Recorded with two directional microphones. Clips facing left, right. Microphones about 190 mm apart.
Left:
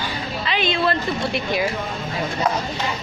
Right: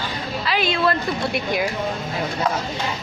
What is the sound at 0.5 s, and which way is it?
Speech, 5° right (ahead or behind).